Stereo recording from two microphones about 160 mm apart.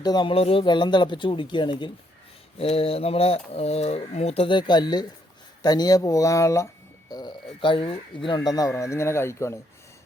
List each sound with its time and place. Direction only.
0.0 s speech: 25° left (ahead or behind)